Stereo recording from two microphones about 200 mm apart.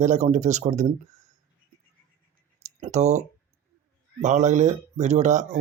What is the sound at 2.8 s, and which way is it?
Speech, 35° right (ahead or behind).